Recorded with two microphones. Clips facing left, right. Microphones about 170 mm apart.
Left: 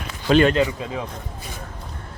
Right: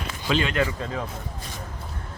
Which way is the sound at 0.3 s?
45° left (ahead or behind).